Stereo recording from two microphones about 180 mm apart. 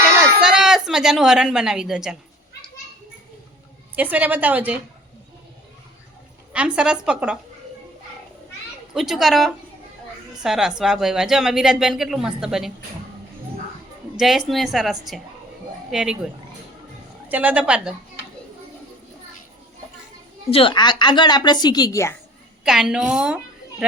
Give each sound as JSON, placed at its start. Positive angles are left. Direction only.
{"t": 0.4, "sound": "a woman's voice", "side_deg": -5}
{"t": 3.9, "sound": "a woman's voice", "side_deg": -10}
{"t": 6.5, "sound": "a woman's voice", "side_deg": -5}
{"t": 8.9, "sound": "a woman's voice", "side_deg": 0}
{"t": 14.2, "sound": "a woman's voice", "side_deg": 0}
{"t": 20.5, "sound": "a woman's voice", "side_deg": 30}
{"t": 22.6, "sound": "a woman's voice", "side_deg": -5}